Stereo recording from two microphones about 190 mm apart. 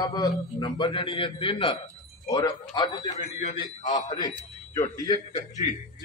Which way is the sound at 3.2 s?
40° left (ahead or behind).